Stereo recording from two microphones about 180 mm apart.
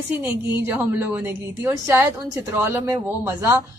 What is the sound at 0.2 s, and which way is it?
A woman's voice, 10° right (ahead or behind).